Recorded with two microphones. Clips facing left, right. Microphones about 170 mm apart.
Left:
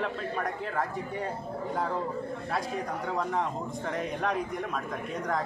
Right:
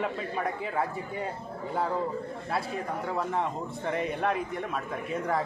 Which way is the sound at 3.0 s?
5° right (ahead or behind).